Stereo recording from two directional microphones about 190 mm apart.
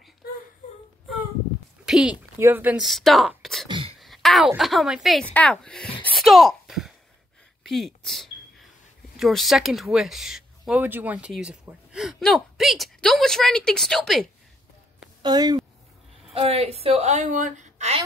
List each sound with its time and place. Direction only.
1.9 s a sound: centre (ahead or behind)
2.3 s speech: 10° right (ahead or behind)
3.6 s throat clearing: 25° right (ahead or behind)
4.0 s speech: centre (ahead or behind)
6.1 s a sound: centre (ahead or behind)
7.6 s speech: centre (ahead or behind)
15.2 s speech: 20° right (ahead or behind)
16.3 s a woman's voice: 30° right (ahead or behind)